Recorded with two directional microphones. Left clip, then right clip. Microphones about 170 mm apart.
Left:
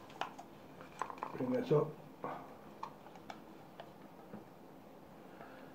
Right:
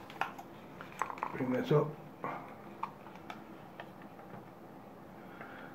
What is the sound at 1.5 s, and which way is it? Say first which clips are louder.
Speech: right 2 dB; 5° right (ahead or behind).